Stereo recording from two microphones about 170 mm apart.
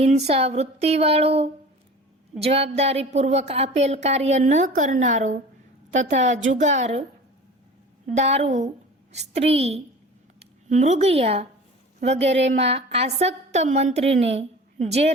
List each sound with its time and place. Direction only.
0.0 s a woman's voice: 40° right (ahead or behind)
8.1 s a woman's voice: 40° right (ahead or behind)